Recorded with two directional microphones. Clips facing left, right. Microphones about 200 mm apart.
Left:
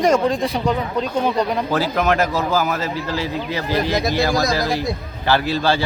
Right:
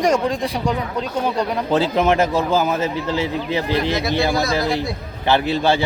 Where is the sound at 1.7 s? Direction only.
20° right (ahead or behind).